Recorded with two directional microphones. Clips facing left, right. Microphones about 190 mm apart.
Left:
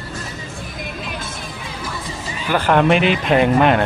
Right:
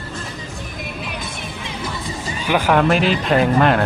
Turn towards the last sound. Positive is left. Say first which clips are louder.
# left 1 dB
turn(degrees=0)  # may be behind; listen again after turning